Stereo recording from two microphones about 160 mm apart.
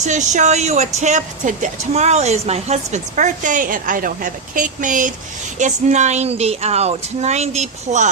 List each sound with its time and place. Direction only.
0.0 s a woman's voice: 50° right (ahead or behind)